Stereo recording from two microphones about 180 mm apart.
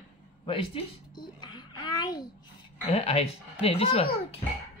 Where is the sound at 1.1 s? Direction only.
25° left (ahead or behind).